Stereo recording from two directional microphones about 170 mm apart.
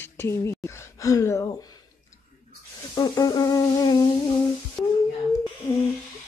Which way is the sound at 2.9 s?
25° left (ahead or behind).